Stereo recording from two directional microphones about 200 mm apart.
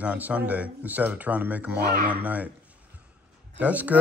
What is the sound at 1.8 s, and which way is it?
Speech, 45° right (ahead or behind).